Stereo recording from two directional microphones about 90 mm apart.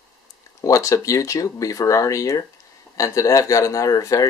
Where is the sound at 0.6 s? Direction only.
35° left (ahead or behind).